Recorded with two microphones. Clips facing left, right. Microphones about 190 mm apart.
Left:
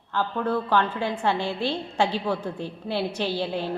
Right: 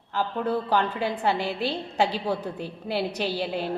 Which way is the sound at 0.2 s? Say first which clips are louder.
Left 1 dB; 15° right (ahead or behind).